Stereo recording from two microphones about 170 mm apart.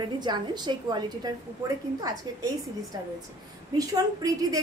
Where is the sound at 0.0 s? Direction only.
25° right (ahead or behind).